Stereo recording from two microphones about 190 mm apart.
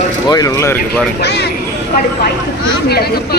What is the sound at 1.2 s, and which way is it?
Speech, 60° left (ahead or behind).